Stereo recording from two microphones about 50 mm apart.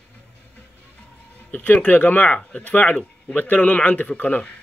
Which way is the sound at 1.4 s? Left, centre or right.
Left.